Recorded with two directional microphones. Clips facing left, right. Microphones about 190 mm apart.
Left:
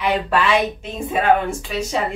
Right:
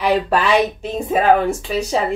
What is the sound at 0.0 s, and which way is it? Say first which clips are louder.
Speech: right 2 dB; 35° right (ahead or behind).